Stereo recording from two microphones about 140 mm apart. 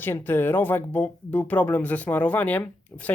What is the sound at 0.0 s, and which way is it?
Speech, 15° left (ahead or behind).